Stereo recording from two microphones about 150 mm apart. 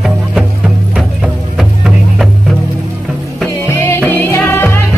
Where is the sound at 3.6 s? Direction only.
15° left (ahead or behind).